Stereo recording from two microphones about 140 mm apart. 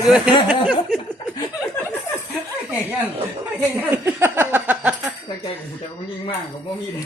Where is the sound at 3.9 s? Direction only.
15° right (ahead or behind).